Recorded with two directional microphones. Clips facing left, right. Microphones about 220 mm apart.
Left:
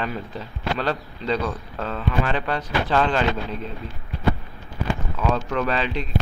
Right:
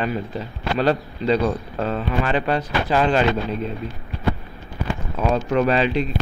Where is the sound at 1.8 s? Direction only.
25° right (ahead or behind).